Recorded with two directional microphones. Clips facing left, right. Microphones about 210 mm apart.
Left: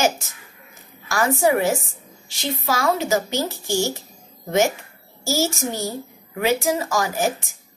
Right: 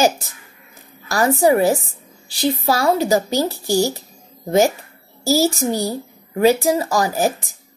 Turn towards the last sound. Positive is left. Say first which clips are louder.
# right 4 dB
turn(degrees=-35)  # may be behind; listen again after turning